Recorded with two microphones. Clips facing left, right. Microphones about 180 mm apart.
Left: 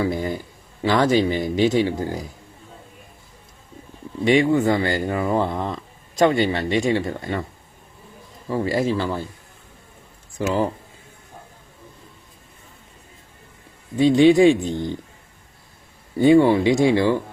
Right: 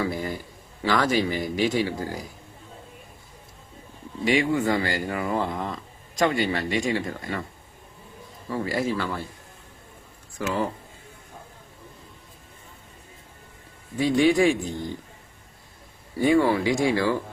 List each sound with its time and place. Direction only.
0.0 s a sound: 25° left (ahead or behind)
0.8 s speech: 25° left (ahead or behind)
4.3 s speech: 30° left (ahead or behind)
8.4 s speech: 25° left (ahead or behind)
10.3 s speech: 25° left (ahead or behind)
13.9 s speech: 25° left (ahead or behind)
16.1 s speech: 25° left (ahead or behind)